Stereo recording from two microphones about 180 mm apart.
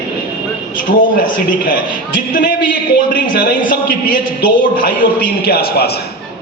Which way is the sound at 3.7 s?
50° left (ahead or behind).